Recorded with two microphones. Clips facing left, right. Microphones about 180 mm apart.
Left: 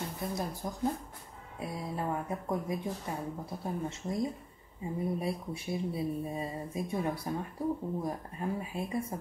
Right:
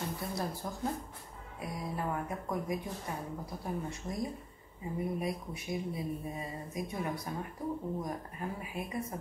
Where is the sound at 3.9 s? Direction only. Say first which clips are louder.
Left 4 dB; 25° left (ahead or behind).